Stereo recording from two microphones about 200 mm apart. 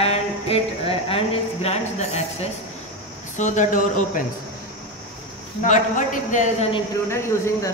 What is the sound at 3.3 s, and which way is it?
Speech, 40° left (ahead or behind).